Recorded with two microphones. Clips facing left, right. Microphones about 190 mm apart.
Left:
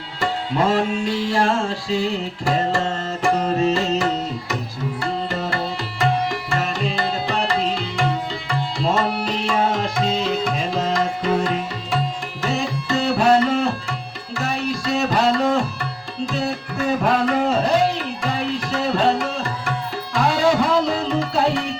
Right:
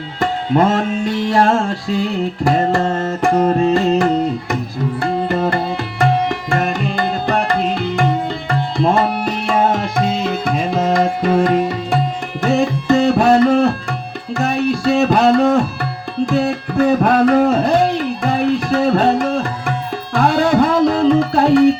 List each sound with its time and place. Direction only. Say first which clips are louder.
0.2 s music: right 6 dB; 50° right (ahead or behind)
6.0 s tabla: right 4 dB; 55° right (ahead or behind)
12.4 s music: right 8 dB; 55° right (ahead or behind)
14.3 s tabla: right 7 dB; 55° right (ahead or behind)
20.1 s music: right 4 dB; 55° right (ahead or behind)